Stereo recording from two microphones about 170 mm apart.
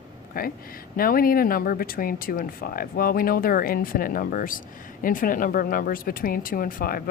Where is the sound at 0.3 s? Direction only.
60° left (ahead or behind).